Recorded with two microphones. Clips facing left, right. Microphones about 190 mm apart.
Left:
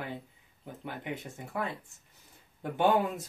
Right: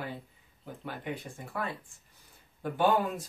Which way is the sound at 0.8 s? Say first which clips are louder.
Even; 20° left (ahead or behind).